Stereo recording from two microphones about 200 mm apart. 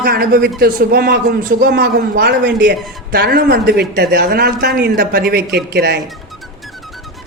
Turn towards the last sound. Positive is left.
turn(degrees=-50)  # may be behind; listen again after turning